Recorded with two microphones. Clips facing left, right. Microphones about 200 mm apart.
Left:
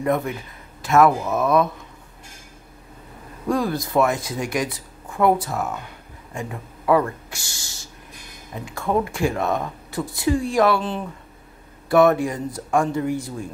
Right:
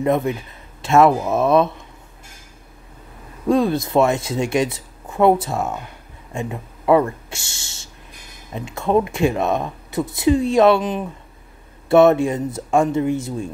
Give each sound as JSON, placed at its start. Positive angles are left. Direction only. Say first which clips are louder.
{"t": 0.0, "sound": "speech", "louder": "right 3 dB", "side_deg": -25}
{"t": 3.4, "sound": "speech", "louder": "right 5 dB", "side_deg": -25}